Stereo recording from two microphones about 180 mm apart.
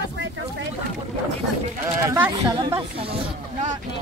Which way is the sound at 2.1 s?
20° right (ahead or behind).